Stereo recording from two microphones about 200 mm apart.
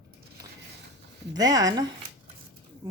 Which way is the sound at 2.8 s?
20° right (ahead or behind).